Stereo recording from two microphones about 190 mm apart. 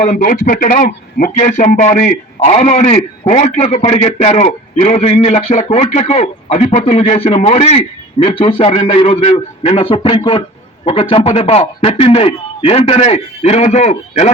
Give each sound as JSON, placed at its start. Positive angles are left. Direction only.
{"t": 0.0, "sound": "a man's voice", "side_deg": 45}